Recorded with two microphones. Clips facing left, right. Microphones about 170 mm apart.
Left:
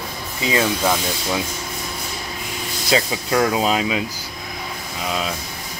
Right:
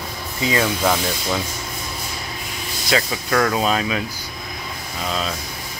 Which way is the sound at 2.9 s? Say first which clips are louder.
Left 1 dB; 20° left (ahead or behind).